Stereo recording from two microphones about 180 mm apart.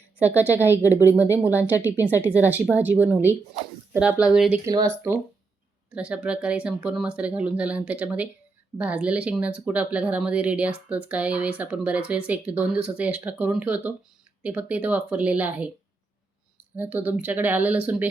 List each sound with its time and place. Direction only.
0.2 s speech: 10° right (ahead or behind)
0.8 s speech: 15° left (ahead or behind)
1.8 s speech: 10° right (ahead or behind)
4.6 s speech: 20° right (ahead or behind)
5.9 s speech: 5° right (ahead or behind)
16.7 s speech: 10° right (ahead or behind)